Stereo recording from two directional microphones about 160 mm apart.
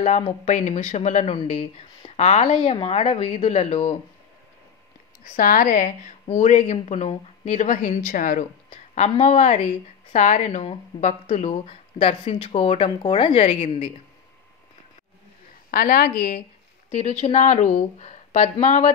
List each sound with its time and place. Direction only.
0.5 s speech: 50° left (ahead or behind)
5.3 s a woman's voice: 55° left (ahead or behind)
9.1 s speech: 45° left (ahead or behind)
15.7 s a woman's voice: 60° left (ahead or behind); by 18.9 s 45° left (ahead or behind)